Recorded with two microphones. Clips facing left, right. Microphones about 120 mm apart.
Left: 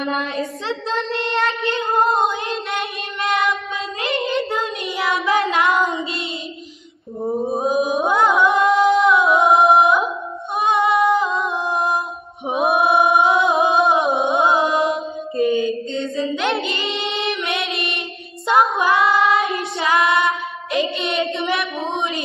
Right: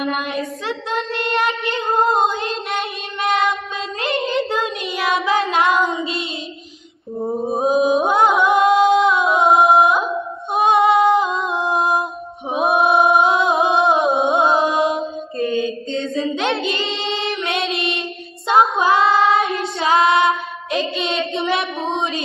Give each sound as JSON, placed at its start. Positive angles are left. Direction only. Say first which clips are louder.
{"t": 0.0, "sound": "child singing", "louder": "even", "side_deg": 25}
{"t": 1.7, "sound": "child singing", "louder": "even", "side_deg": -25}
{"t": 7.2, "sound": "mantra", "louder": "even", "side_deg": 0}
{"t": 7.5, "sound": "music", "louder": "right 5 dB", "side_deg": -20}
{"t": 10.5, "sound": "female singing", "louder": "right 3 dB", "side_deg": -25}
{"t": 12.5, "sound": "music", "louder": "right 1 dB", "side_deg": -30}
{"t": 15.3, "sound": "mantra", "louder": "left 3 dB", "side_deg": 15}
{"t": 15.6, "sound": "mantra", "louder": "left 1 dB", "side_deg": -30}
{"t": 16.6, "sound": "child singing", "louder": "right 2 dB", "side_deg": -30}
{"t": 21.9, "sound": "music", "louder": "right 1 dB", "side_deg": -25}